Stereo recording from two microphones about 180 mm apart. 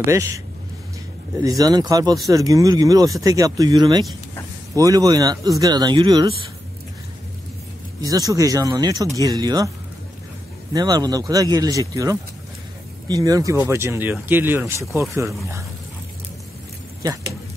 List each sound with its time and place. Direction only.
0.1 s speech: 15° right (ahead or behind)
1.4 s speech: 20° right (ahead or behind)
8.0 s speech: 20° right (ahead or behind)
10.7 s speech: 20° right (ahead or behind)
17.0 s speech: 20° right (ahead or behind)